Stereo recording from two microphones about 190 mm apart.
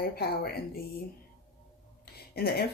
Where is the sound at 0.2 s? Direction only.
55° left (ahead or behind).